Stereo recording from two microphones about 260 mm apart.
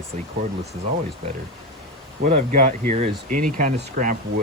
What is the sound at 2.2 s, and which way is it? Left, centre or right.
Speech, right.